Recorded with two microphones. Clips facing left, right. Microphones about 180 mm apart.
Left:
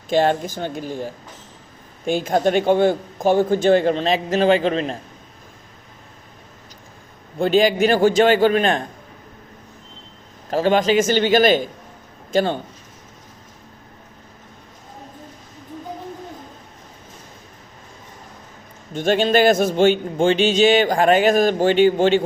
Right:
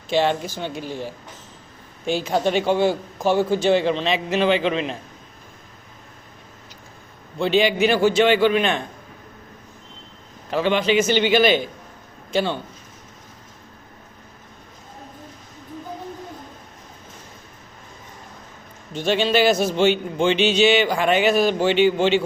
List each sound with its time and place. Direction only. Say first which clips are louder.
0.1 s a man's voice: left 2 dB; 45° left (ahead or behind)
7.3 s a man's voice: left 3 dB; 45° left (ahead or behind)
10.5 s a man's voice: left 3 dB; 40° left (ahead or behind)
18.9 s a man's voice: left 3 dB; 50° left (ahead or behind)